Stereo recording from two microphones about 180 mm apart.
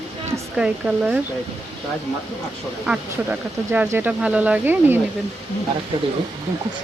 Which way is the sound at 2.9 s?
10° right (ahead or behind).